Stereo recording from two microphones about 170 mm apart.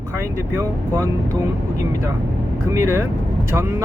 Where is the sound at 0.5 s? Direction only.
20° right (ahead or behind).